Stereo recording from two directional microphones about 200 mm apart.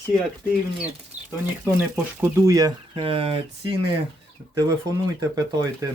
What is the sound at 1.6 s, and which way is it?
Speech, 10° right (ahead or behind).